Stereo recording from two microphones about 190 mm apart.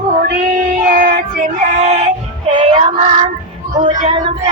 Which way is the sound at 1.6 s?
35° right (ahead or behind).